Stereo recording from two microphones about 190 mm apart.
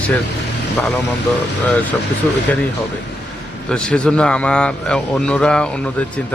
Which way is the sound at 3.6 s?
5° left (ahead or behind).